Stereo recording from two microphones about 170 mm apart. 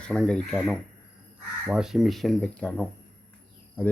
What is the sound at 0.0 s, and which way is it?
Speech, 5° left (ahead or behind).